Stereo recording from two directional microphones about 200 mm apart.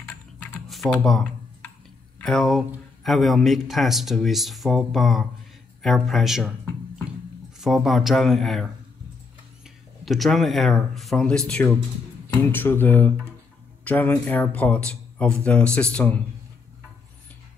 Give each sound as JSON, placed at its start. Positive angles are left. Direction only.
{"t": 0.7, "sound": "computer keyboard", "side_deg": 0}
{"t": 2.2, "sound": "a man's voice", "side_deg": 0}
{"t": 10.0, "sound": "a man's voice", "side_deg": 0}